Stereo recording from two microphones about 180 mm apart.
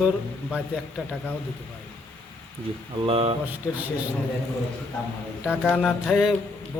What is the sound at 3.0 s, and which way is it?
Speech, 30° right (ahead or behind).